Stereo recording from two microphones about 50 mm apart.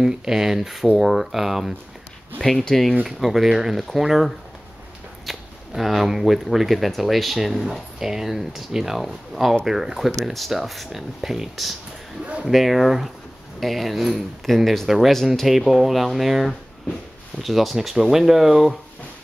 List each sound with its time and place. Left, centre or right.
0.0 s speech: centre
2.4 s speech: centre
3.2 s speech: centre
5.7 s speech: centre